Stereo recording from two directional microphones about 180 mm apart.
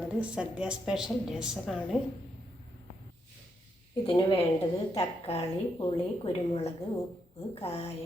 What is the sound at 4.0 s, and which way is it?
A woman's voice, 25° left (ahead or behind).